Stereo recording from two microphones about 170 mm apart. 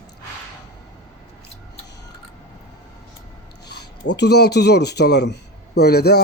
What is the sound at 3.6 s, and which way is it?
A man's voice, 80° left.